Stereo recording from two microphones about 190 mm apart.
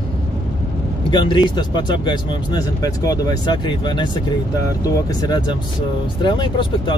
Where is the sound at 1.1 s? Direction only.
25° left (ahead or behind).